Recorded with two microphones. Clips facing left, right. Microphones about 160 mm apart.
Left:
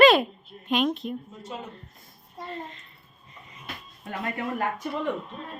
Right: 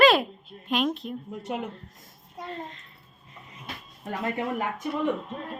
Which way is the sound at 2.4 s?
Centre (ahead or behind).